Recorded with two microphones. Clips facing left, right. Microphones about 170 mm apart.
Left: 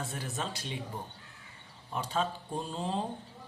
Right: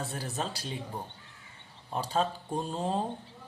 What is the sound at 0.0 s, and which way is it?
Speech, 35° right (ahead or behind).